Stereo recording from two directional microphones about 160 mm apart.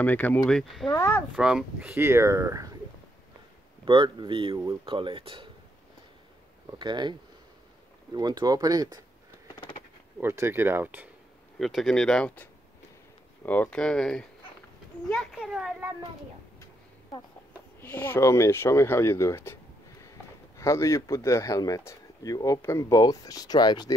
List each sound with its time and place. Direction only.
0.0 s speech: 10° left (ahead or behind)
0.9 s speech: 15° left (ahead or behind)
1.3 s speech: 5° right (ahead or behind); by 2.7 s 20° right (ahead or behind)
3.8 s speech: 30° right (ahead or behind)
6.8 s speech: 30° right (ahead or behind)
10.2 s speech: 15° right (ahead or behind)
11.5 s speech: centre (ahead or behind)
17.7 s speech: 10° left (ahead or behind)